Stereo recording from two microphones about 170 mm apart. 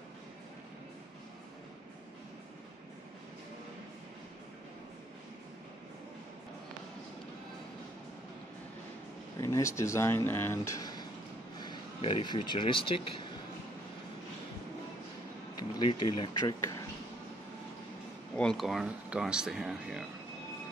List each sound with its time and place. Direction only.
9.4 s speech: 15° left (ahead or behind)
15.8 s speech: 30° left (ahead or behind)
18.3 s speech: 5° left (ahead or behind)